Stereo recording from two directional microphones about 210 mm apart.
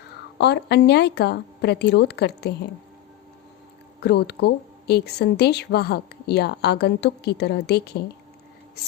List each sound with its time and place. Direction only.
0.3 s speech: 55° left (ahead or behind)
4.0 s speech: 55° left (ahead or behind)